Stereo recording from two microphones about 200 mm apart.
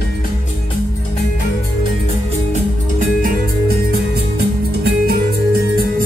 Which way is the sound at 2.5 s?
40° right (ahead or behind).